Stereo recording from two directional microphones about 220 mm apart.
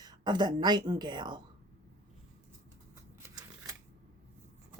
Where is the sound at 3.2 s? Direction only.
15° right (ahead or behind).